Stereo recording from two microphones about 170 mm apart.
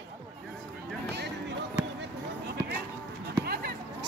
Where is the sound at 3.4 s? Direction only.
65° right (ahead or behind).